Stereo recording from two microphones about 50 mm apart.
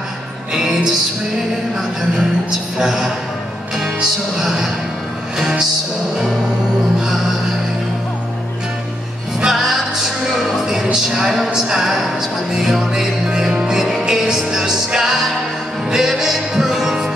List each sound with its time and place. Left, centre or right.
2.8 s music: centre
9.4 s music: centre